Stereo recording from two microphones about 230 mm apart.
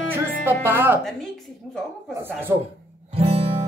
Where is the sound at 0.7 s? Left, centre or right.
Centre.